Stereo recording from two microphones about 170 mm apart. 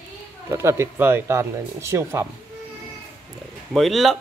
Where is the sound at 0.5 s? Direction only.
15° right (ahead or behind).